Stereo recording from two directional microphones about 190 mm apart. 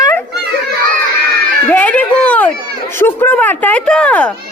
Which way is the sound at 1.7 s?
10° left (ahead or behind).